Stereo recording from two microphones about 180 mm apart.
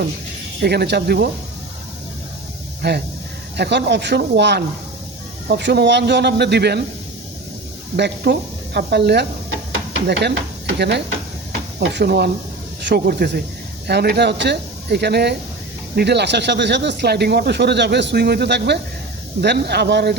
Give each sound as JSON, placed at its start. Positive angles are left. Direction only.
{"t": 0.6, "sound": "speech", "side_deg": -65}
{"t": 2.8, "sound": "speech", "side_deg": -70}
{"t": 7.9, "sound": "speech", "side_deg": -70}